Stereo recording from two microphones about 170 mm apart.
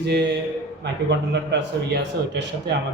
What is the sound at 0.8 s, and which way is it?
A man's voice, 90° right.